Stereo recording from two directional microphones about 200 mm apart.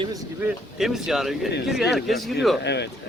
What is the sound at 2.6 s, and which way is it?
Speech, 55° left (ahead or behind).